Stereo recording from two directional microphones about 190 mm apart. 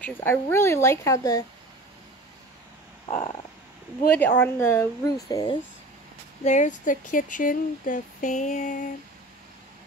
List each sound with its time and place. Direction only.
0.0 s speech: 10° left (ahead or behind)
4.1 s speech: 10° left (ahead or behind)
6.4 s speech: 40° left (ahead or behind)